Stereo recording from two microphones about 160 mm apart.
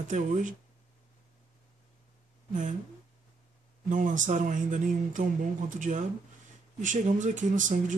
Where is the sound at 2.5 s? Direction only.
50° right (ahead or behind).